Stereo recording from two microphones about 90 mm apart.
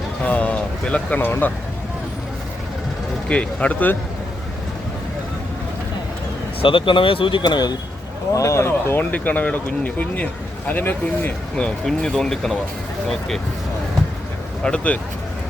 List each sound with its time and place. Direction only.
0.3 s speech: 15° left (ahead or behind)
3.2 s speech: 15° left (ahead or behind)
6.6 s speech: 75° left (ahead or behind); by 7.8 s 55° left (ahead or behind)
8.3 s speech: 35° left (ahead or behind); by 13.4 s 5° left (ahead or behind)
14.6 s speech: 10° left (ahead or behind)